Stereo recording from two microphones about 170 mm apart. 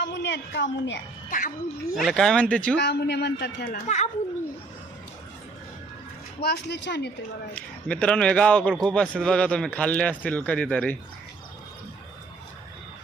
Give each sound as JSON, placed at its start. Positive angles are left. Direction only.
{"t": 0.0, "sound": "a woman's voice", "side_deg": 90}
{"t": 1.3, "sound": "speech", "side_deg": 55}
{"t": 2.0, "sound": "speech", "side_deg": 0}
{"t": 2.7, "sound": "a man's voice", "side_deg": 85}
{"t": 3.8, "sound": "a woman's voice", "side_deg": 40}
{"t": 6.4, "sound": "a man's voice", "side_deg": 75}
{"t": 7.5, "sound": "a man's voice", "side_deg": 10}